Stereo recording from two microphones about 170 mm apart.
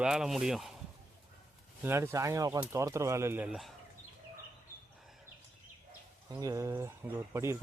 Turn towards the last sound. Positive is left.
turn(degrees=-15)  # may be behind; listen again after turning